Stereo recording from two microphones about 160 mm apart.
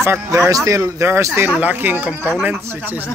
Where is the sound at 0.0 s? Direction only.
15° right (ahead or behind).